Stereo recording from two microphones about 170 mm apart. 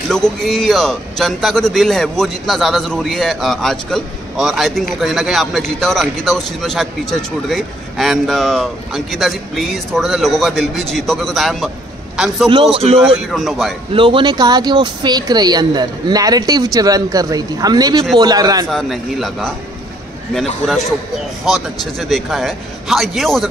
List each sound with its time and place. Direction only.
0.1 s a man's voice: centre (ahead or behind)
12.7 s speech: 35° right (ahead or behind)
13.0 s a man's voice: centre (ahead or behind)
13.9 s speech: 30° right (ahead or behind)
18.7 s a man's voice: centre (ahead or behind)
21.5 s a man's voice: centre (ahead or behind)